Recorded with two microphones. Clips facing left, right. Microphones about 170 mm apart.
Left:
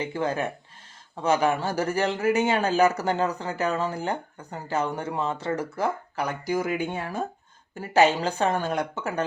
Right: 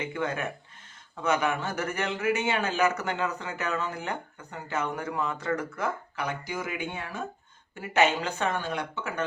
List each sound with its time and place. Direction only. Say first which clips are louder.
0.0 s speech: left 4 dB; 30° left (ahead or behind)